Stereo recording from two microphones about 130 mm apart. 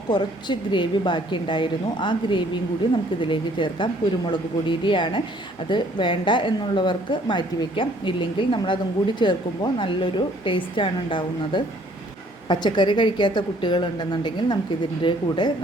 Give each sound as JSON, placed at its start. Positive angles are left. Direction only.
{"t": 0.1, "sound": "a woman's voice", "side_deg": 35}